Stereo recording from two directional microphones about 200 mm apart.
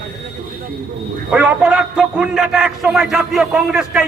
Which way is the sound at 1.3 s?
5° right (ahead or behind).